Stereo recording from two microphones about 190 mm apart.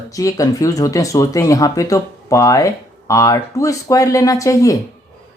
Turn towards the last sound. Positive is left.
turn(degrees=15)  # may be behind; listen again after turning